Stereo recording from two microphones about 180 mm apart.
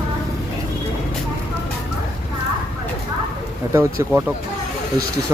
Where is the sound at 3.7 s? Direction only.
15° right (ahead or behind).